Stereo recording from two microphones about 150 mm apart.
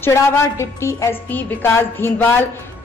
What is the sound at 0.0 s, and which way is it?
A woman's voice, 15° left (ahead or behind).